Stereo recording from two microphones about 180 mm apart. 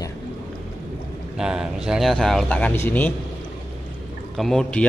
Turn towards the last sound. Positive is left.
turn(degrees=5)  # may be behind; listen again after turning